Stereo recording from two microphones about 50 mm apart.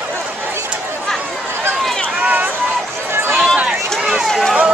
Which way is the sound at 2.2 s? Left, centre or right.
Right.